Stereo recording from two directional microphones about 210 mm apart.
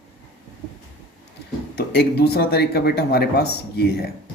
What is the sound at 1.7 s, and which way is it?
Speech, 50° left (ahead or behind).